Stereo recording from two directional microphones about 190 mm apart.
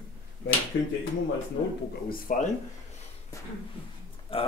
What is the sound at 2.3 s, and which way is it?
Speech, 45° left (ahead or behind).